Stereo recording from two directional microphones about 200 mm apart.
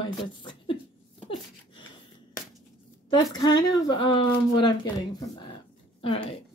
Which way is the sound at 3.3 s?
20° left (ahead or behind).